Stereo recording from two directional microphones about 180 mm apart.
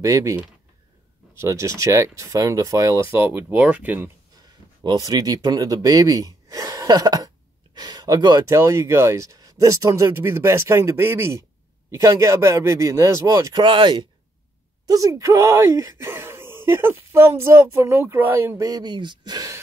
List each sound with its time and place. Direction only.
0.0 s speech: 15° right (ahead or behind)
4.8 s speech: 20° right (ahead or behind)